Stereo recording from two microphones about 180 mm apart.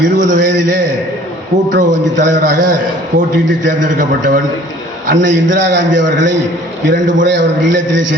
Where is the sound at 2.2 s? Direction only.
45° right (ahead or behind).